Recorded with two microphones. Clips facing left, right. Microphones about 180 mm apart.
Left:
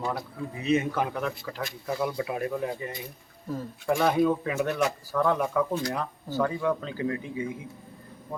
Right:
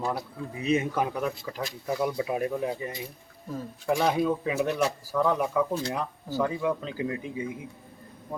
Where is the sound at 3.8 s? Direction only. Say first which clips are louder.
Left 2 dB; centre (ahead or behind).